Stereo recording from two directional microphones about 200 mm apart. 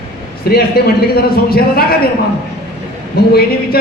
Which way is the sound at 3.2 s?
50° left (ahead or behind).